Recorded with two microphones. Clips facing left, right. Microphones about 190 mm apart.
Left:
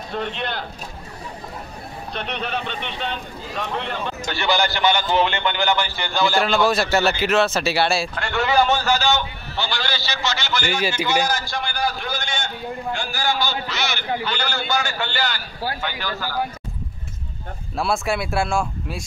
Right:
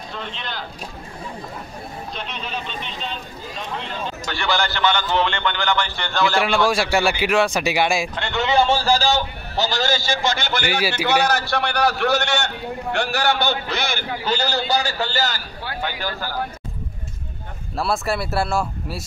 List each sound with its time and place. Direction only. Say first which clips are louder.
0.1 s speech: left 6 dB; 55° left (ahead or behind)
2.1 s speech: left 6 dB; 60° left (ahead or behind)
4.3 s a man's voice: left 2 dB; 20° left (ahead or behind); by 6.5 s centre (ahead or behind)
6.5 s a man's voice: even; 10° right (ahead or behind); by 14.0 s 55° right (ahead or behind)
14.3 s a man's voice: right 3 dB; 40° right (ahead or behind)
17.7 s speech: even; centre (ahead or behind)